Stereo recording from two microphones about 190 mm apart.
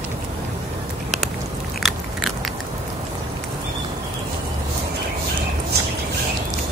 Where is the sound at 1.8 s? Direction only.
Centre (ahead or behind).